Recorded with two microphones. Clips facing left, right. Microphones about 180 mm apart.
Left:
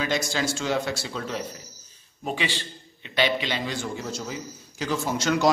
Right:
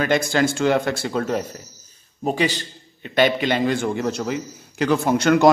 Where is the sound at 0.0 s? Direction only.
55° right (ahead or behind).